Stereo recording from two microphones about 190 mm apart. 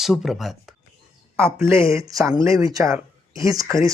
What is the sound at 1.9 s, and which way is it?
Speech, 15° right (ahead or behind).